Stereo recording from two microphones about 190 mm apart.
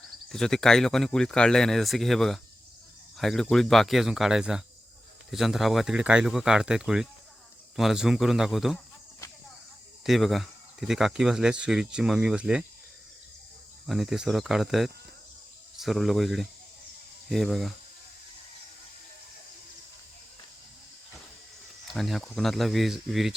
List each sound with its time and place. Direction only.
0.3 s speech: 5° left (ahead or behind)
9.2 s cricket: 15° left (ahead or behind)
10.0 s speech: centre (ahead or behind)
13.8 s speech: centre (ahead or behind)
21.9 s speech: centre (ahead or behind)